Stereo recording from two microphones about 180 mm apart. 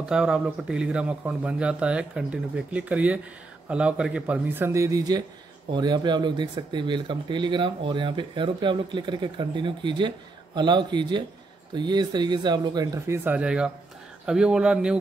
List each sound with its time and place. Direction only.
0.0 s a man's voice: 5° right (ahead or behind)